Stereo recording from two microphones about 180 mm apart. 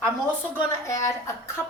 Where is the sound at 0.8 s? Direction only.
15° left (ahead or behind).